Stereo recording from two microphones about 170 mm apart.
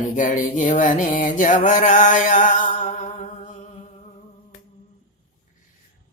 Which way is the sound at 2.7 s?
50° left (ahead or behind).